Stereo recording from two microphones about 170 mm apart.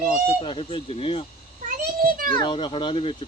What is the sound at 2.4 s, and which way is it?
Speech, 30° left (ahead or behind).